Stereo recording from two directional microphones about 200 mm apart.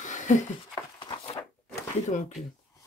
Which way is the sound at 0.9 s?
25° left (ahead or behind).